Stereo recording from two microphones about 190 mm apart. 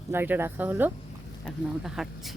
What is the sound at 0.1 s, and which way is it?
Speech, 10° right (ahead or behind).